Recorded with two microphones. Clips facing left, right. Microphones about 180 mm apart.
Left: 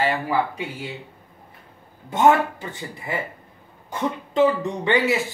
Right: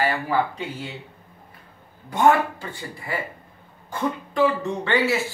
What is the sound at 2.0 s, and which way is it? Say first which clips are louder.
Speech: left 1 dB; 20° left (ahead or behind).